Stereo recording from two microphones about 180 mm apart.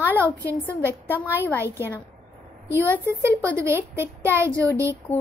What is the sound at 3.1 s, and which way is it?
Speech, 15° right (ahead or behind).